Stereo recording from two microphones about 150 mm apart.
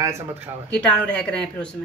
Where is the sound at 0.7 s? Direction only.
10° left (ahead or behind).